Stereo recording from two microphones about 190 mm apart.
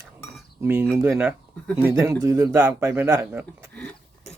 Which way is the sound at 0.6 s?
10° right (ahead or behind).